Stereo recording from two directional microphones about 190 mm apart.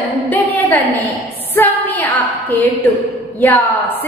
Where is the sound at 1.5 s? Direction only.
10° left (ahead or behind).